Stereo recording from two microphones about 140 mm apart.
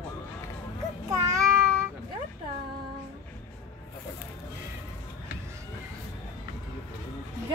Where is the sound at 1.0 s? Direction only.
25° right (ahead or behind).